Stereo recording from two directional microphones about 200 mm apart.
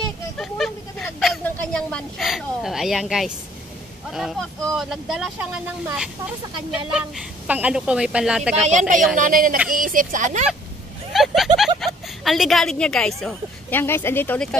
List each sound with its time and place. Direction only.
0.4 s a sound: centre (ahead or behind)
4.1 s a woman's voice: centre (ahead or behind)
8.6 s a woman's voice: 35° right (ahead or behind)
11.1 s a woman's voice: centre (ahead or behind)